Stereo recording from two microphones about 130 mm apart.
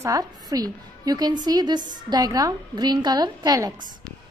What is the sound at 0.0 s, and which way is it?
A woman's voice, 25° right (ahead or behind).